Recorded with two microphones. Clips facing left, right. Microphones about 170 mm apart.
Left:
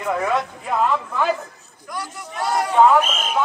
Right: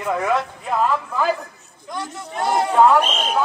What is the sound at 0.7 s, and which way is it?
Speech, centre (ahead or behind).